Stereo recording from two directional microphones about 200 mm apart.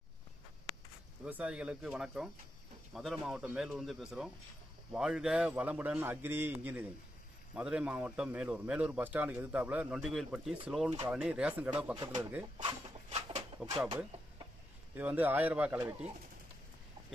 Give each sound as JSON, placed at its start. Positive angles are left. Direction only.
{"t": 1.2, "sound": "a man's voice", "side_deg": -5}
{"t": 12.6, "sound": "a sound", "side_deg": -30}
{"t": 15.0, "sound": "a man's voice", "side_deg": -10}